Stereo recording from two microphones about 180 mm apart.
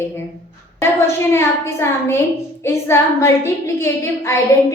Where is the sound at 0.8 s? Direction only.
15° left (ahead or behind).